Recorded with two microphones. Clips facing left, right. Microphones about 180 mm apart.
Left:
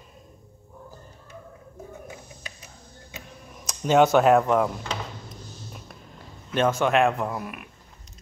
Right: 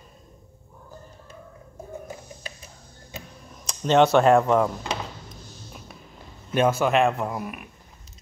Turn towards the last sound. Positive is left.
turn(degrees=0)  # may be behind; listen again after turning